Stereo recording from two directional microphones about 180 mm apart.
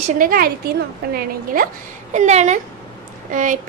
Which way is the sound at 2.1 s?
40° right (ahead or behind).